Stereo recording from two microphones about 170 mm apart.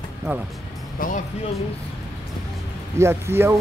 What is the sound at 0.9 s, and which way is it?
Speech, 55° left (ahead or behind).